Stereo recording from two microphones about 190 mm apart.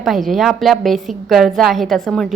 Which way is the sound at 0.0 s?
Centre (ahead or behind).